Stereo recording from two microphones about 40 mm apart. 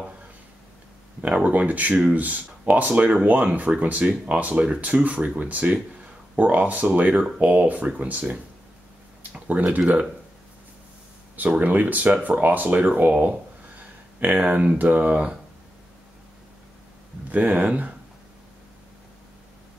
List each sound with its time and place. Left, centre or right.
1.2 s speech: right
11.3 s speech: right
13.7 s a sound: right
14.8 s speech: right
17.3 s speech: right